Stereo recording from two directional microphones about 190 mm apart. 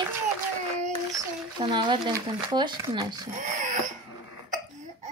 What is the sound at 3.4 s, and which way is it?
Wheeze, 45° right (ahead or behind).